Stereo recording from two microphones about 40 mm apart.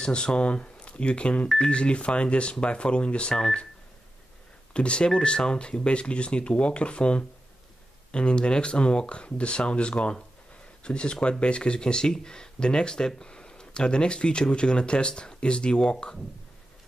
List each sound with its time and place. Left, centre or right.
0.0 s speech: left
4.7 s speech: left